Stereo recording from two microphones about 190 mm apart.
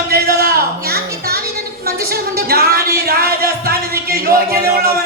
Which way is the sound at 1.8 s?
55° right (ahead or behind).